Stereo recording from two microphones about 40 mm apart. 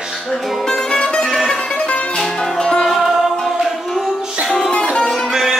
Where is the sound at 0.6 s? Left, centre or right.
Centre.